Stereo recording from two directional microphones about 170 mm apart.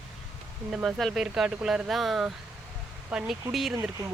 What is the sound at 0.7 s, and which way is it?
Speech, centre (ahead or behind).